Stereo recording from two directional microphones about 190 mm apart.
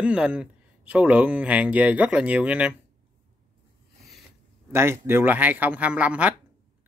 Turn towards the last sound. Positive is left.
turn(degrees=-5)  # may be behind; listen again after turning